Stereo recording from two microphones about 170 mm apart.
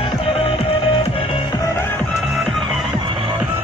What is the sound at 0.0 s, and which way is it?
Music, 35° left (ahead or behind).